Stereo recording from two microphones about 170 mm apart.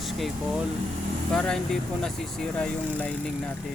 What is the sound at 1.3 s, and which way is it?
Speech, 5° left (ahead or behind).